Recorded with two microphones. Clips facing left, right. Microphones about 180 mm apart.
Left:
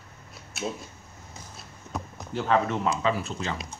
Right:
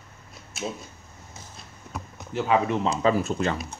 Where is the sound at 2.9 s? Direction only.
40° right (ahead or behind); by 3.8 s 55° right (ahead or behind).